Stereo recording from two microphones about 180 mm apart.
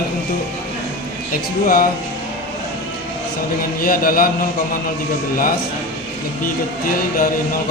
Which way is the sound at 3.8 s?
55° left (ahead or behind).